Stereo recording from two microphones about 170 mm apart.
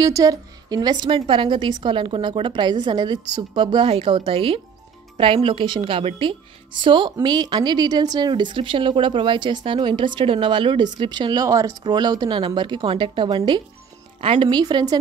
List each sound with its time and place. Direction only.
0.0 s a woman's voice: 20° right (ahead or behind)